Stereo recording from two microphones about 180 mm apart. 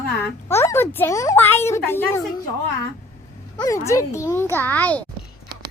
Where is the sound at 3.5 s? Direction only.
20° left (ahead or behind).